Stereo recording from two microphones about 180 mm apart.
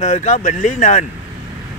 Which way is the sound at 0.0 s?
40° left (ahead or behind).